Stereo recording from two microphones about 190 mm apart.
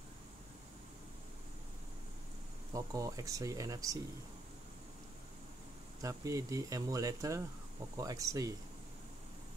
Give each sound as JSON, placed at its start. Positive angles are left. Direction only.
{"t": 2.7, "sound": "speech", "side_deg": -15}
{"t": 6.0, "sound": "speech", "side_deg": -15}